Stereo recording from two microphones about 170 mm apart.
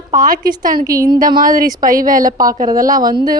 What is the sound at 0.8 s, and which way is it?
Speech, 20° right (ahead or behind).